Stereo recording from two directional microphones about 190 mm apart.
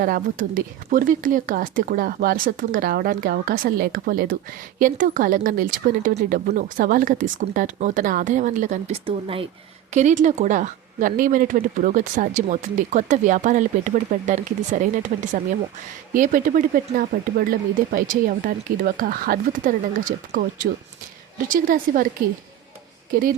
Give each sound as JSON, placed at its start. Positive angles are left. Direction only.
{"t": 0.0, "sound": "speech", "side_deg": -45}
{"t": 9.0, "sound": "speech", "side_deg": -30}
{"t": 9.9, "sound": "speech", "side_deg": -40}